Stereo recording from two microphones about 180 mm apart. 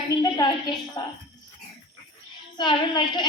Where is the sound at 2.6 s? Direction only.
25° left (ahead or behind).